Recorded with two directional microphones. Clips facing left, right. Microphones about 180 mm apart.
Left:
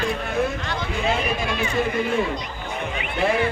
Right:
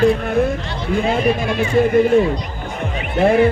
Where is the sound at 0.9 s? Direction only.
50° right (ahead or behind).